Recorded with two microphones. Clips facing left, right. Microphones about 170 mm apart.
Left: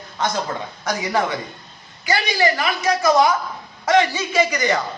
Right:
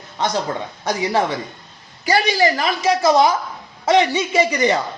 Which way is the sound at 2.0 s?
35° right (ahead or behind).